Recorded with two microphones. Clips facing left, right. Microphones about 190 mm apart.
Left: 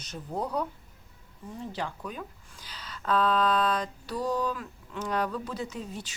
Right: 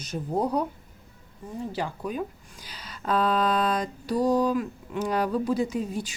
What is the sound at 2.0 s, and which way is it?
A woman's voice, 10° right (ahead or behind).